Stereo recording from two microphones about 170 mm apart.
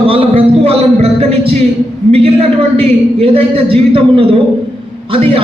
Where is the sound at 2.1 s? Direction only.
35° right (ahead or behind).